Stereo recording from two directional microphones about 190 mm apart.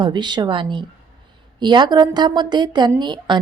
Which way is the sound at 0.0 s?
25° right (ahead or behind).